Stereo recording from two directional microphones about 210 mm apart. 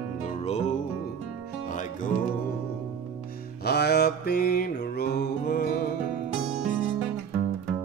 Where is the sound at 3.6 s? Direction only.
50° left (ahead or behind).